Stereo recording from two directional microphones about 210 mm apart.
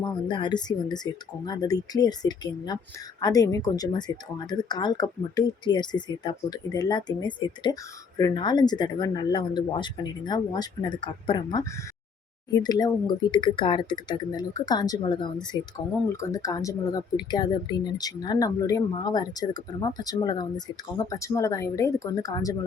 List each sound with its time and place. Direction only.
0.0 s speech: 20° left (ahead or behind)
12.6 s speech: 20° left (ahead or behind)